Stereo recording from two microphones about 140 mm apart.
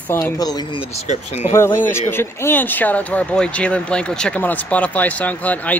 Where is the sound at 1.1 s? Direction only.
50° left (ahead or behind).